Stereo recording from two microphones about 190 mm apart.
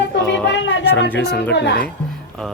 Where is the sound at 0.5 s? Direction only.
75° left (ahead or behind).